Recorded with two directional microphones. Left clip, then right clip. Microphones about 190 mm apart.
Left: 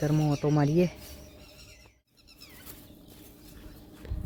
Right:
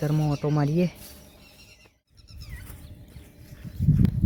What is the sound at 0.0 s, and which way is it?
Speech, 5° right (ahead or behind).